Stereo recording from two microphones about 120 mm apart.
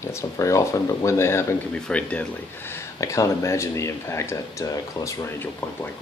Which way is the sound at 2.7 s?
25° left (ahead or behind).